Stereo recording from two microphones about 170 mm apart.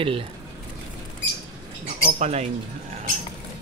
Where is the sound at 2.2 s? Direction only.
40° right (ahead or behind).